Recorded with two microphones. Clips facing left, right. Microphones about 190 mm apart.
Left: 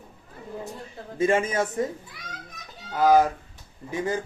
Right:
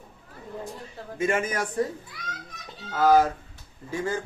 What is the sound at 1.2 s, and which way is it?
Speech, 30° left (ahead or behind).